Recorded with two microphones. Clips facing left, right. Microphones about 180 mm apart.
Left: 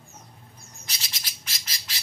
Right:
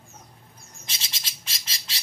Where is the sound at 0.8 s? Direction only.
25° right (ahead or behind).